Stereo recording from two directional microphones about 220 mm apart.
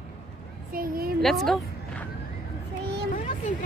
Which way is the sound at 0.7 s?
40° right (ahead or behind).